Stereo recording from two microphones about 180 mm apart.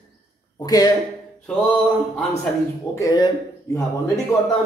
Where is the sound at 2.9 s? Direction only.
20° left (ahead or behind).